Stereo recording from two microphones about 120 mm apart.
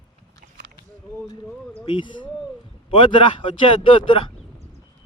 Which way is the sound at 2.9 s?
45° left (ahead or behind).